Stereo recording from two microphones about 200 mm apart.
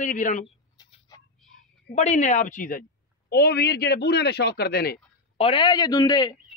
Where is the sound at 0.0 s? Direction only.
40° left (ahead or behind).